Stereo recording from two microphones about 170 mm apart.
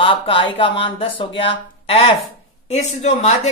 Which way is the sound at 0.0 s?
30° left (ahead or behind).